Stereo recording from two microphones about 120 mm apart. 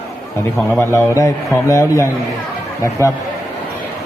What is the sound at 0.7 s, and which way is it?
A man's voice, 20° left (ahead or behind).